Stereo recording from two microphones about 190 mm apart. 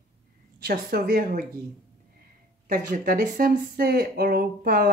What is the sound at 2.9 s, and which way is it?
Speech, 45° right (ahead or behind).